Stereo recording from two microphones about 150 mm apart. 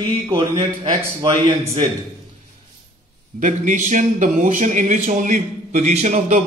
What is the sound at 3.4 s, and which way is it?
Speech, 60° right (ahead or behind).